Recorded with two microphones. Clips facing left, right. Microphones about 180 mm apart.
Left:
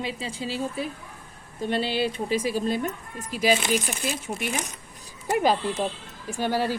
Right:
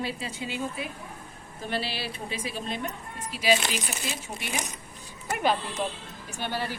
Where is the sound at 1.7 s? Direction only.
25° left (ahead or behind).